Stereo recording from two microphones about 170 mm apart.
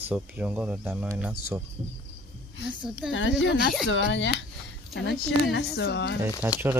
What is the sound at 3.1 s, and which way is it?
Speech, 90° left.